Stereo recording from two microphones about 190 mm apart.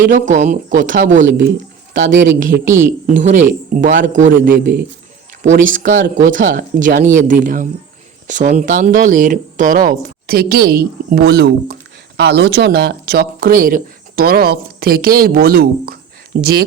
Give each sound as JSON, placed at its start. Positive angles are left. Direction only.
{"t": 0.1, "sound": "speech", "side_deg": -40}
{"t": 1.4, "sound": "speech", "side_deg": -60}
{"t": 2.5, "sound": "speech", "side_deg": -15}
{"t": 3.7, "sound": "speech", "side_deg": -45}
{"t": 5.9, "sound": "speech", "side_deg": -75}
{"t": 6.2, "sound": "speech", "side_deg": -45}